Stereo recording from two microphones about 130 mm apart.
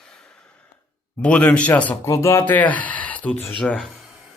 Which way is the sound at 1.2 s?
10° left (ahead or behind).